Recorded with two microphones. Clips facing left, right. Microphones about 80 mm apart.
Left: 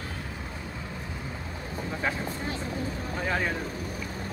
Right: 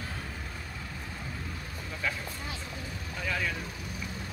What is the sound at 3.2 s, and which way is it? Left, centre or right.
Vehicle, left.